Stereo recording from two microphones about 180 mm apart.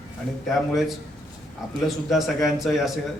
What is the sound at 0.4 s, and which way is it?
Speech, centre (ahead or behind).